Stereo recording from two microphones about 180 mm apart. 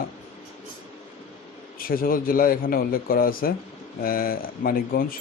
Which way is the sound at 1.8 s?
55° left (ahead or behind).